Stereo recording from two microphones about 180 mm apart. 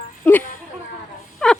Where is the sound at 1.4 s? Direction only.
5° left (ahead or behind).